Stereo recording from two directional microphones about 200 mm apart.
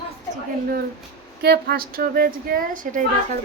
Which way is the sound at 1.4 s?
50° right (ahead or behind).